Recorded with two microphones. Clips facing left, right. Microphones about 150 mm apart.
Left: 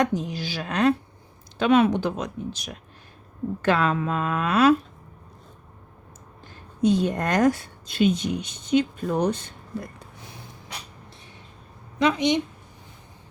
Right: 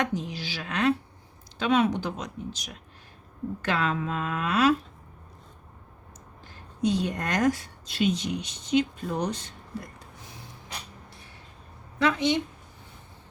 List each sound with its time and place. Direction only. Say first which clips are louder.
0.0 s speech: left 5 dB; 45° left (ahead or behind)
1.5 s speech: left 5 dB; 55° left (ahead or behind)
6.8 s speech: left 5 dB; 50° left (ahead or behind)
11.9 s speech: left 3 dB; 15° left (ahead or behind)